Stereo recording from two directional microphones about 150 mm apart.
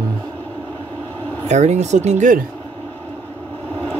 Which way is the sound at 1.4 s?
50° right (ahead or behind).